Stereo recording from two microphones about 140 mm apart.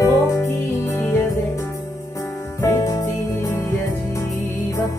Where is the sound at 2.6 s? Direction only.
20° left (ahead or behind).